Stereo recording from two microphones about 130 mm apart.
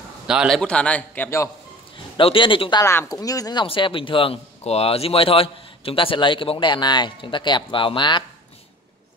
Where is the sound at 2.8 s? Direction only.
20° left (ahead or behind).